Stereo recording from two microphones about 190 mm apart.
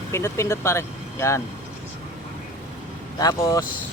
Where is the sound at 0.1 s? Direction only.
15° left (ahead or behind).